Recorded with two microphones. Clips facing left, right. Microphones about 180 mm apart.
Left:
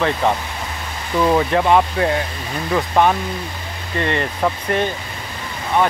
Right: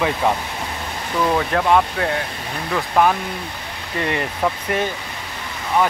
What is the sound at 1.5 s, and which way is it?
Speech, 5° left (ahead or behind).